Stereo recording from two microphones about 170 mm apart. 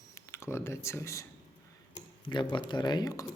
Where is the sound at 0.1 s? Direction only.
15° left (ahead or behind).